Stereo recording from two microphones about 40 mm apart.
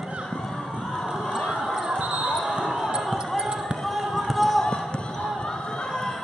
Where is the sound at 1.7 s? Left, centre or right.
Centre.